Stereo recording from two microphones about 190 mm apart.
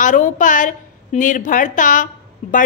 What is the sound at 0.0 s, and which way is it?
A woman's voice, 45° left (ahead or behind).